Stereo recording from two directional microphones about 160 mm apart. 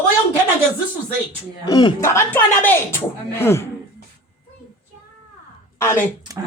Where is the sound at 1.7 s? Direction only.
25° left (ahead or behind).